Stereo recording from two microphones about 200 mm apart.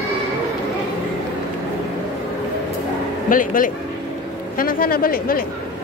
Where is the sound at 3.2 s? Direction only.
45° left (ahead or behind).